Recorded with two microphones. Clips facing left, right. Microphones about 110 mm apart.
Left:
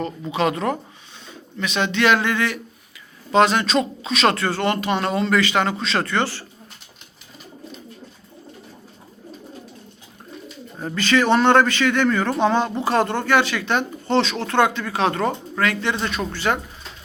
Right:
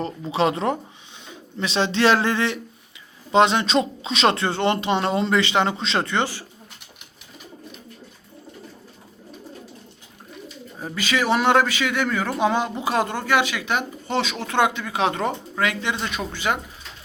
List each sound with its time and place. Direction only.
0.3 s speech: 30° right (ahead or behind)
10.8 s a man's voice: 10° right (ahead or behind)